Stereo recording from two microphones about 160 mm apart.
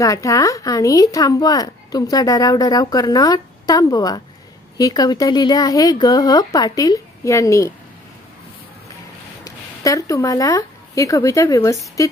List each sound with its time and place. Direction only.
0.0 s speech: 20° left (ahead or behind)
9.4 s speech: 20° left (ahead or behind)